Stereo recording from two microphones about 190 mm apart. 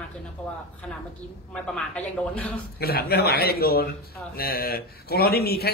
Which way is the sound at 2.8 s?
55° left (ahead or behind).